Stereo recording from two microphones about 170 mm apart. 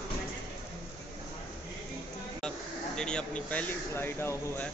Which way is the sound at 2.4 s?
5° left (ahead or behind).